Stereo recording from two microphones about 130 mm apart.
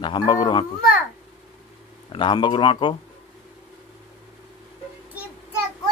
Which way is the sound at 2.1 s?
40° left (ahead or behind).